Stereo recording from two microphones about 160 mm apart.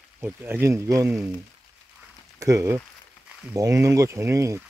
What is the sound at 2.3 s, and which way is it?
Speech, 20° right (ahead or behind).